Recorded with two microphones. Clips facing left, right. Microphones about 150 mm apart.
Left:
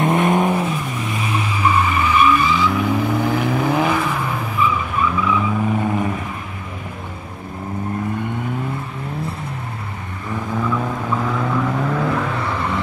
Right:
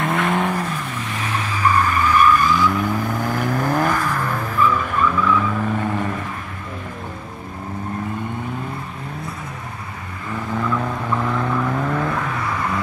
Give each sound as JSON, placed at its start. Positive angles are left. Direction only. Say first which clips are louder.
{"t": 0.0, "sound": "vehicle", "louder": "left 4 dB", "side_deg": 20}
{"t": 10.5, "sound": "vehicle", "louder": "left 1 dB", "side_deg": 5}
{"t": 12.4, "sound": "vehicle", "louder": "left 1 dB", "side_deg": 30}